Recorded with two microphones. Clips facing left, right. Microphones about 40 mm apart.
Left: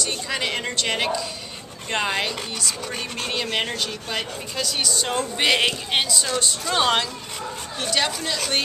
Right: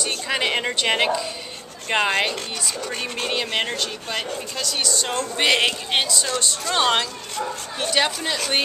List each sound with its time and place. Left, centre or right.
0.3 s speech: centre
7.9 s speech: centre